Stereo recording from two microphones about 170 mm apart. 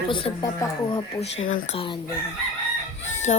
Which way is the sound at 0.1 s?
30° left (ahead or behind).